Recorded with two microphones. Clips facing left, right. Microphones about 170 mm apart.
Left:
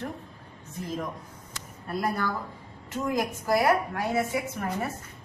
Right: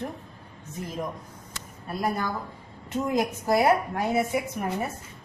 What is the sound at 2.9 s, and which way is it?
A woman's voice, 20° right (ahead or behind).